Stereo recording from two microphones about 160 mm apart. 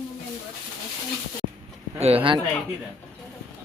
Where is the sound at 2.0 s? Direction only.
35° right (ahead or behind).